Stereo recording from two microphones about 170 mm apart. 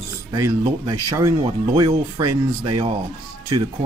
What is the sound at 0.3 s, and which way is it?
Speech, 20° right (ahead or behind).